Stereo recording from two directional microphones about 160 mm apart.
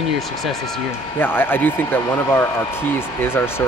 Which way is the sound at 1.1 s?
15° left (ahead or behind).